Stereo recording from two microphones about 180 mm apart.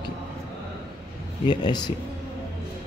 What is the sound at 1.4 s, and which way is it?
Speech, 25° left (ahead or behind).